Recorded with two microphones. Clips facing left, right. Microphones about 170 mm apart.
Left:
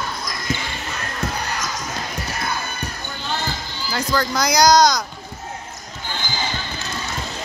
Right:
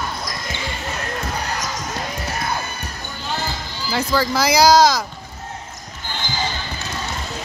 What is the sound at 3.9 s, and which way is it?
Speech, 5° right (ahead or behind).